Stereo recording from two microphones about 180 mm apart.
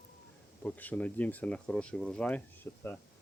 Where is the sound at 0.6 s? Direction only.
10° left (ahead or behind).